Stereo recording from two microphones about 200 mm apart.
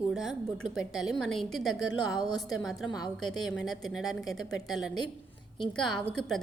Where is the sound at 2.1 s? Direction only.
20° left (ahead or behind).